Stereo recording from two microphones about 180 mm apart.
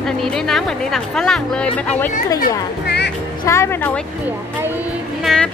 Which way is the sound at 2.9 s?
65° left (ahead or behind).